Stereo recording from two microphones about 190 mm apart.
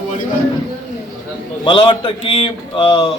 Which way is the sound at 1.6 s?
25° left (ahead or behind).